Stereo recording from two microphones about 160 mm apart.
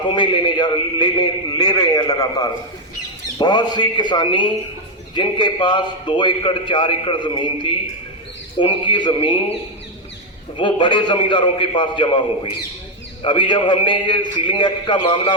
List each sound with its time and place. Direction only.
0.1 s a man's voice: 30° left (ahead or behind)
10.6 s a man's voice: 30° left (ahead or behind)